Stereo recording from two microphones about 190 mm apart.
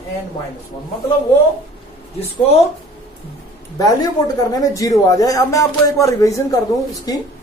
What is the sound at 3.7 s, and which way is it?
Speech, 20° left (ahead or behind).